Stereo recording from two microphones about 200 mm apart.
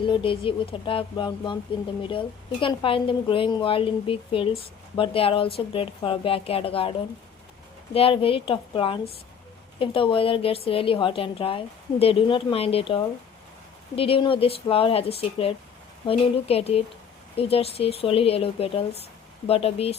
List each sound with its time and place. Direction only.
0.0 s a woman's voice: 25° left (ahead or behind)
7.9 s a woman's voice: 25° left (ahead or behind)